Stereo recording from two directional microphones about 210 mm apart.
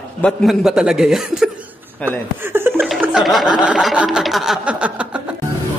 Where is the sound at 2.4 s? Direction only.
10° right (ahead or behind).